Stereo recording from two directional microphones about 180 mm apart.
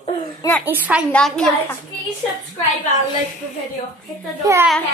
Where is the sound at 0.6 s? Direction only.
10° right (ahead or behind).